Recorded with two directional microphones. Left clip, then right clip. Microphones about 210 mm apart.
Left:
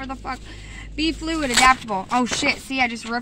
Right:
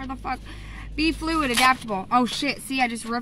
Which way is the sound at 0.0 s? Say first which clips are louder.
Even; 20° right (ahead or behind).